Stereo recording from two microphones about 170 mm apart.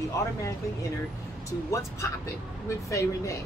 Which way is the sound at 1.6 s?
20° left (ahead or behind).